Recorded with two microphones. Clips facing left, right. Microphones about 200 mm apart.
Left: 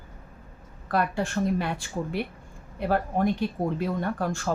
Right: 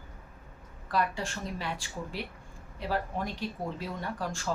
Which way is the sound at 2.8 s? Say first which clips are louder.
Left 8 dB; 55° left (ahead or behind).